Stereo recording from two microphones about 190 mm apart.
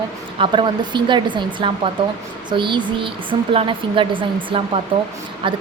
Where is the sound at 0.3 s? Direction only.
25° right (ahead or behind).